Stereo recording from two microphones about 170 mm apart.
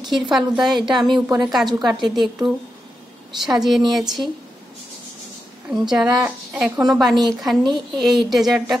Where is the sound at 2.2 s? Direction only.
Centre (ahead or behind).